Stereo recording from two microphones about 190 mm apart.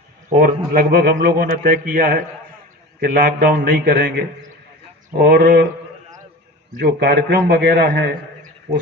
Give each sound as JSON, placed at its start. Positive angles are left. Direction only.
{"t": 0.3, "sound": "a man's voice", "side_deg": -45}
{"t": 6.8, "sound": "a man's voice", "side_deg": -60}